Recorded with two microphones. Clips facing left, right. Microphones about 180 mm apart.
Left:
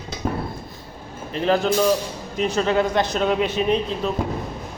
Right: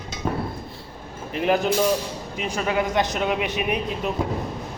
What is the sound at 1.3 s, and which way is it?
Speech, 15° right (ahead or behind).